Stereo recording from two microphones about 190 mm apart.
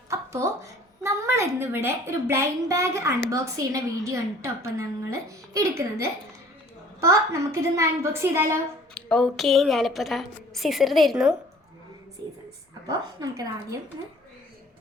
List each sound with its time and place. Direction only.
0.1 s a woman's voice: 15° right (ahead or behind)
9.0 s a woman's voice: 5° left (ahead or behind)
12.9 s a woman's voice: 20° right (ahead or behind)